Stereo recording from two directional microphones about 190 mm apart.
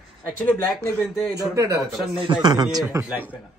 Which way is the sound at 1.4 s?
20° right (ahead or behind).